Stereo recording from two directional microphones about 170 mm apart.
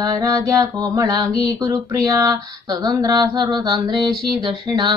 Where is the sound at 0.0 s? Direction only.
20° right (ahead or behind).